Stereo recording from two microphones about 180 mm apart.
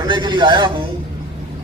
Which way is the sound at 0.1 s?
25° right (ahead or behind).